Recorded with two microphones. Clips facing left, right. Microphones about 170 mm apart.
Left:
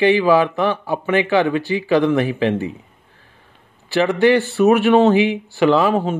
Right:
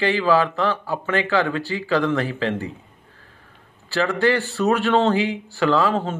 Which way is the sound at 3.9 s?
20° left (ahead or behind).